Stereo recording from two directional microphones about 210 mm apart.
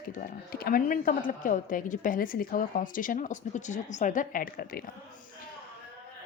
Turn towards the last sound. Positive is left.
turn(degrees=45)  # may be behind; listen again after turning